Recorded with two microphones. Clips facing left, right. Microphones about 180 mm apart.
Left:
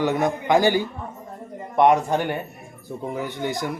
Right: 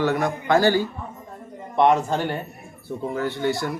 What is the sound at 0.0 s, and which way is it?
Speech, 20° left (ahead or behind).